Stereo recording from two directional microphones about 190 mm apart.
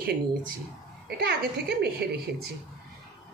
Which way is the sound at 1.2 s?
55° right (ahead or behind).